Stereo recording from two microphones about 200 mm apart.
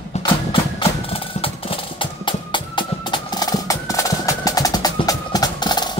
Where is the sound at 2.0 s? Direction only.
25° left (ahead or behind).